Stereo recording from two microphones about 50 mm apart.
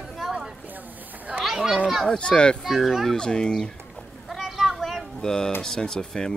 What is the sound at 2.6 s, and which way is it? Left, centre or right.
Speech, centre.